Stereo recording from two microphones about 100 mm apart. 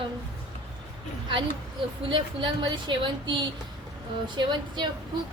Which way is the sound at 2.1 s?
55° right (ahead or behind).